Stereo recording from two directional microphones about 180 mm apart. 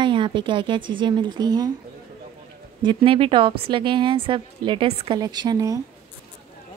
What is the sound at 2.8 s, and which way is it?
Speech, 25° right (ahead or behind).